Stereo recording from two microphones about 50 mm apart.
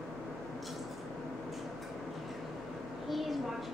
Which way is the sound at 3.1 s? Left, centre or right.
Centre.